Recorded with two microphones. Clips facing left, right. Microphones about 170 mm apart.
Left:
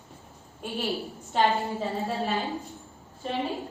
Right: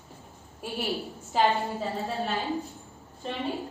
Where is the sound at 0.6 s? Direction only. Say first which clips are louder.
Left 1 dB; 5° right (ahead or behind).